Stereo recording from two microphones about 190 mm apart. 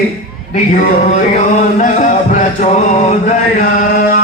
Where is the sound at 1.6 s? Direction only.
40° left (ahead or behind).